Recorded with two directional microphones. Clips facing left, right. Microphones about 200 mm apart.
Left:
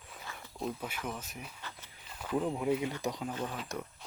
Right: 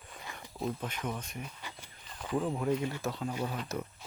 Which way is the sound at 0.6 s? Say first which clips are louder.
Right 2 dB; 5° left (ahead or behind).